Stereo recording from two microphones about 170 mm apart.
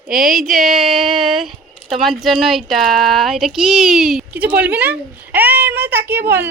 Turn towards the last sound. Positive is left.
turn(degrees=-15)  # may be behind; listen again after turning